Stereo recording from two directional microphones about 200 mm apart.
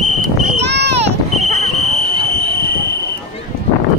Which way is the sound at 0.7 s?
60° right (ahead or behind).